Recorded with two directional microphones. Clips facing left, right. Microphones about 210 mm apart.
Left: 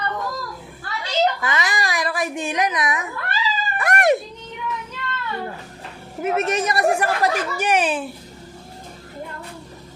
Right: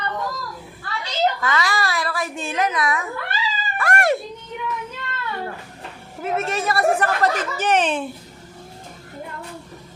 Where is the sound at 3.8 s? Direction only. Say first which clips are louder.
Left 2 dB; 20° left (ahead or behind).